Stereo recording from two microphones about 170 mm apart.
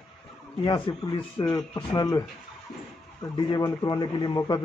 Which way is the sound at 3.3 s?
25° left (ahead or behind).